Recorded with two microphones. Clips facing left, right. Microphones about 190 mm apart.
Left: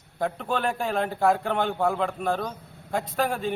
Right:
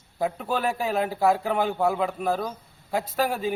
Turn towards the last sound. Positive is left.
turn(degrees=-5)  # may be behind; listen again after turning